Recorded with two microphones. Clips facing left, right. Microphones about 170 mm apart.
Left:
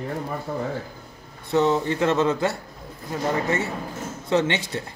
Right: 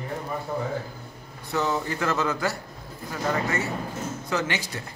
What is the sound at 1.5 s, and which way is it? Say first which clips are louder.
A man's voice: left 6 dB; 25° left (ahead or behind).